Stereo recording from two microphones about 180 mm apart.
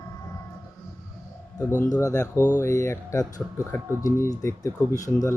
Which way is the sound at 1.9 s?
20° left (ahead or behind).